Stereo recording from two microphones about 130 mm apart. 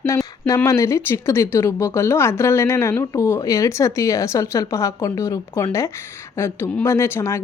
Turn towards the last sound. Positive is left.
turn(degrees=20)  # may be behind; listen again after turning